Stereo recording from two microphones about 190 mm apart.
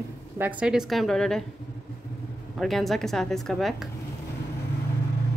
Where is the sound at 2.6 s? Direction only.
Centre (ahead or behind).